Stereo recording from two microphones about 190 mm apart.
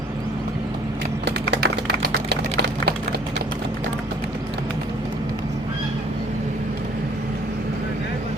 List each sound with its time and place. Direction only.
1.2 s typing: 60° right (ahead or behind)